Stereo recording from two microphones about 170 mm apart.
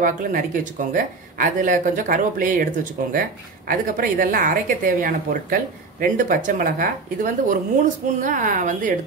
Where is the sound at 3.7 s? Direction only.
55° right (ahead or behind).